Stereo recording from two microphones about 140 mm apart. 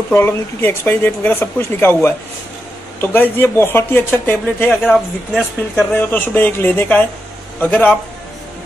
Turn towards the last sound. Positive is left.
turn(degrees=10)  # may be behind; listen again after turning